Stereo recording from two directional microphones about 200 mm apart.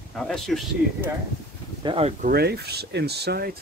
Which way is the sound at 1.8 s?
25° right (ahead or behind).